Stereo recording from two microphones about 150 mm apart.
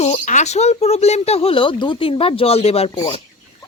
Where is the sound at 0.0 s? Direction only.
55° left (ahead or behind).